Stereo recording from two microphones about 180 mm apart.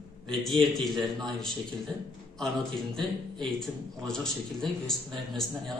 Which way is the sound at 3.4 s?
Centre (ahead or behind).